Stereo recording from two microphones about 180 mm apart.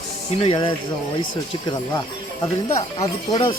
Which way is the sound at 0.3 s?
30° left (ahead or behind).